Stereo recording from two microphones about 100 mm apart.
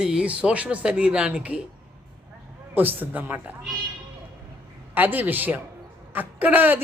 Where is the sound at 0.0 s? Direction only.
10° right (ahead or behind).